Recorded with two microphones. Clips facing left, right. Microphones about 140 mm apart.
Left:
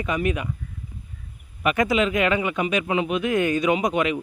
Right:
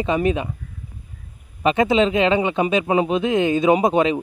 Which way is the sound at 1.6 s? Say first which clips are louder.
Right 4 dB; 25° right (ahead or behind).